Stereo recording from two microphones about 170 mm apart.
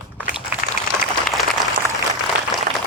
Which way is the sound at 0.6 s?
55° left (ahead or behind).